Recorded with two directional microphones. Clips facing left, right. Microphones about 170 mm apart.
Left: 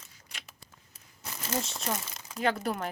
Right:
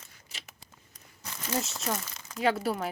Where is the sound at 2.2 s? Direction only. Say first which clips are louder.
Right 2 dB; 5° right (ahead or behind).